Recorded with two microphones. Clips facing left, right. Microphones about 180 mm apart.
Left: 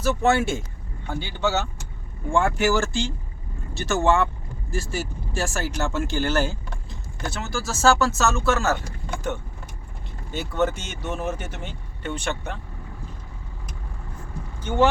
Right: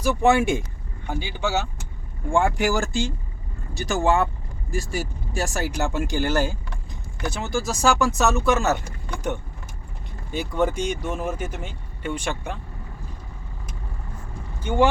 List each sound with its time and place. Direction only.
0.0 s speech: 15° right (ahead or behind)
10.5 s speech: 15° right (ahead or behind)
14.6 s speech: 10° right (ahead or behind)